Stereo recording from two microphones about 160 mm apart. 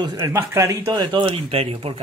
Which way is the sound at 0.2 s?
15° right (ahead or behind).